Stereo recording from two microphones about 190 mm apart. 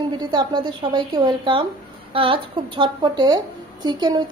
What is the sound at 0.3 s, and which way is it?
A woman's voice, 25° right (ahead or behind).